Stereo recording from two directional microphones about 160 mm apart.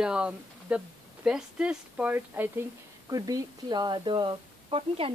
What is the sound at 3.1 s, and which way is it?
Speech, 20° right (ahead or behind).